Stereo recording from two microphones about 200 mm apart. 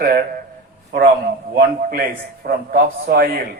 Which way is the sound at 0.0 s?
50° right (ahead or behind).